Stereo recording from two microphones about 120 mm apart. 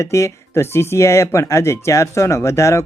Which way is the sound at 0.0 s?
25° left (ahead or behind).